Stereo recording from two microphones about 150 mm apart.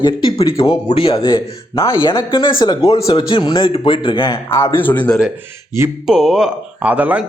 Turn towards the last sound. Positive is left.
turn(degrees=-10)  # may be behind; listen again after turning